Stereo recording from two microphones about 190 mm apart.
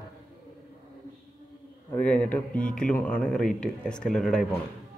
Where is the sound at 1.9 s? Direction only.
10° left (ahead or behind).